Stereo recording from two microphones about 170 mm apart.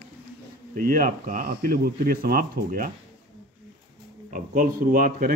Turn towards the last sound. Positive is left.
turn(degrees=-55)  # may be behind; listen again after turning